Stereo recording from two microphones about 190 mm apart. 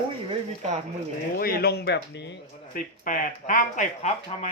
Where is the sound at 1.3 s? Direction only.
55° left (ahead or behind).